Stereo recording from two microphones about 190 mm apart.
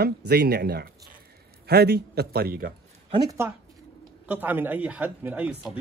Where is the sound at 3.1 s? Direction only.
20° right (ahead or behind).